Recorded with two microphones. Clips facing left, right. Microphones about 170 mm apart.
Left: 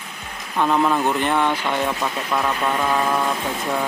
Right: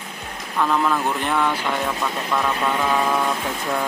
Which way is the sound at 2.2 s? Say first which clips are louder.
Even; 5° left (ahead or behind).